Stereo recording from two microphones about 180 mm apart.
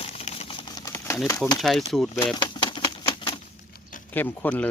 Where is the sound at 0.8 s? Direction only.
20° left (ahead or behind).